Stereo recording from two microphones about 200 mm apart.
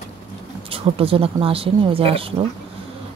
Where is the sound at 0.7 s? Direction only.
25° right (ahead or behind).